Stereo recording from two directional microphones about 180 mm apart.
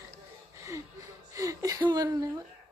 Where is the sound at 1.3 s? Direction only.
20° right (ahead or behind).